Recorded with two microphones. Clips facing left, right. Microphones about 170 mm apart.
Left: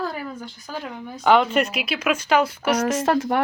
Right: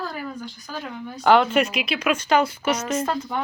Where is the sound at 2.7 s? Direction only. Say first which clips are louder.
Left 7 dB; 75° left (ahead or behind).